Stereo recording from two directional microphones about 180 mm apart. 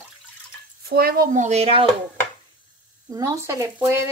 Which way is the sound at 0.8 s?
55° right (ahead or behind).